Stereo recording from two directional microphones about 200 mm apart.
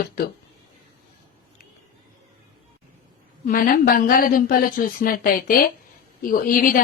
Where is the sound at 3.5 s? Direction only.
45° left (ahead or behind).